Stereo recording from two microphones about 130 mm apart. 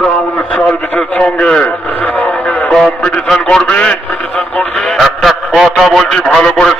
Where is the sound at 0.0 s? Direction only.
10° left (ahead or behind).